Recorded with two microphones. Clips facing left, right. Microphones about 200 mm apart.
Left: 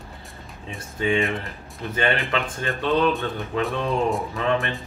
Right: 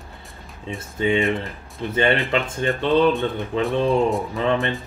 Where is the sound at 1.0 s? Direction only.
20° right (ahead or behind).